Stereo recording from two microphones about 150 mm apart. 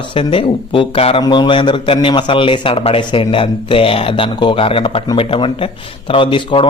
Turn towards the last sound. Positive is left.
turn(degrees=35)  # may be behind; listen again after turning